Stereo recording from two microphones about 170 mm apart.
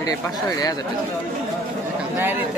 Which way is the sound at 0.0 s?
20° left (ahead or behind).